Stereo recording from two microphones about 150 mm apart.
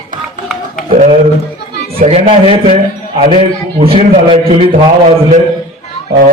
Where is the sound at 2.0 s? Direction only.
40° right (ahead or behind).